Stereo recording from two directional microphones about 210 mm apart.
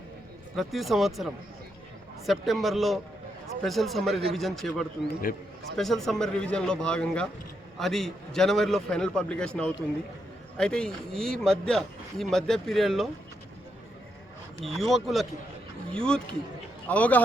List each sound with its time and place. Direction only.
0.5 s a man's voice: centre (ahead or behind)
5.3 s a man's voice: 40° left (ahead or behind)
5.7 s a man's voice: centre (ahead or behind)
14.6 s a man's voice: centre (ahead or behind)